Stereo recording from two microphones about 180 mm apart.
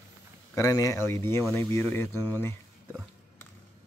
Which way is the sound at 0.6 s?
20° left (ahead or behind).